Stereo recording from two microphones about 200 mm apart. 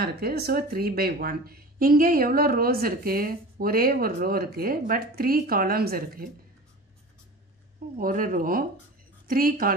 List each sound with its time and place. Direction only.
0.0 s speech: 50° right (ahead or behind)
8.0 s speech: 45° right (ahead or behind)